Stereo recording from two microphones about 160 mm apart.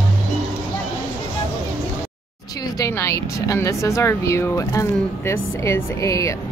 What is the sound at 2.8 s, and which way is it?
Speech, 20° left (ahead or behind).